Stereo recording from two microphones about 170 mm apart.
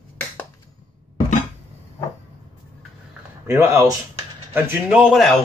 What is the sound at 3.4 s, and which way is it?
Speech, 15° right (ahead or behind).